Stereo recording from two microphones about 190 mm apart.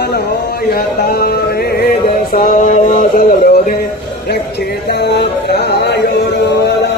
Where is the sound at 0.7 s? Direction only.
55° left (ahead or behind).